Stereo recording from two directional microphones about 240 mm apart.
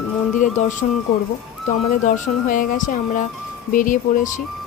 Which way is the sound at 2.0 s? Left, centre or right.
Left.